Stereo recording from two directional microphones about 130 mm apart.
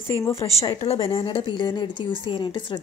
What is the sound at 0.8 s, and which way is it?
A woman's voice, 45° left (ahead or behind).